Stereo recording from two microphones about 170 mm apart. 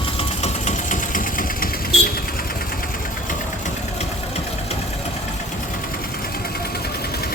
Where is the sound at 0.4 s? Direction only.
45° left (ahead or behind).